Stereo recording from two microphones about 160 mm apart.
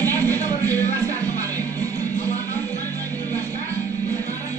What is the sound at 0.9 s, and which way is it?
Music, 20° right (ahead or behind).